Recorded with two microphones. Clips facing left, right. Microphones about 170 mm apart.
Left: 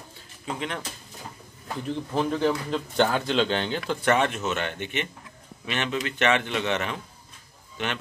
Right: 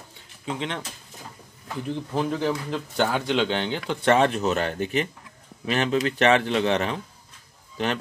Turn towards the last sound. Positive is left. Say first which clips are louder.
# right 5 dB
turn(degrees=-35)  # may be behind; listen again after turning